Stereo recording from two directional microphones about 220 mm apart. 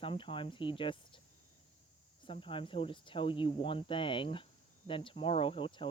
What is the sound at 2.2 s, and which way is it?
Speech, 25° left (ahead or behind).